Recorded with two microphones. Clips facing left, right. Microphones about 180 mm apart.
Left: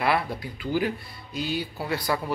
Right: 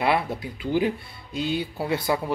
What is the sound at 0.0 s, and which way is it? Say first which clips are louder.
Speech: right 2 dB; 20° right (ahead or behind).